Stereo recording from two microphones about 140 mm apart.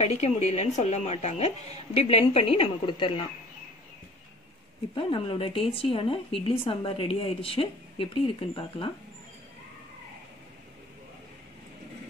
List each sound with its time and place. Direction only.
0.0 s speech: 50° left (ahead or behind)
4.9 s speech: 40° left (ahead or behind)